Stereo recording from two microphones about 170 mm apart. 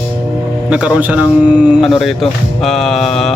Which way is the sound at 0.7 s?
5° right (ahead or behind).